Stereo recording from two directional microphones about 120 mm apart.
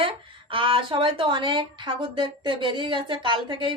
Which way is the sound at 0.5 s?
45° right (ahead or behind).